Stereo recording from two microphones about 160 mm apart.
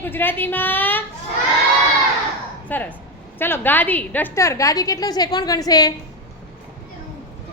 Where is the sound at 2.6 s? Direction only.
10° left (ahead or behind).